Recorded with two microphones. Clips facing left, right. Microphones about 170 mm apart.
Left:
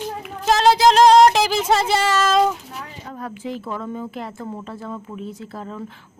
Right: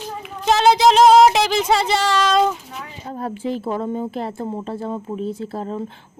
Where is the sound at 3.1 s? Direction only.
30° right (ahead or behind).